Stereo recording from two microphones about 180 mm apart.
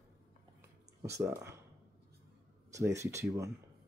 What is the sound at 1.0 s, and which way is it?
Speech, 15° right (ahead or behind).